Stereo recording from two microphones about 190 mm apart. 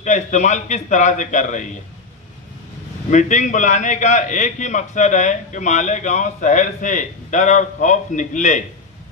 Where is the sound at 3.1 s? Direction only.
40° left (ahead or behind).